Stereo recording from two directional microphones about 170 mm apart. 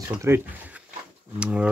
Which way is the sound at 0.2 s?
10° right (ahead or behind).